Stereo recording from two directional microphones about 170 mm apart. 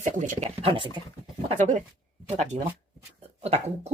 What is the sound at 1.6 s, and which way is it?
Speech, 45° right (ahead or behind).